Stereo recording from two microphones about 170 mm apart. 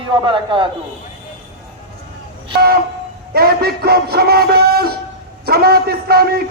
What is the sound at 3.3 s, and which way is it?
A man's voice, 65° right (ahead or behind).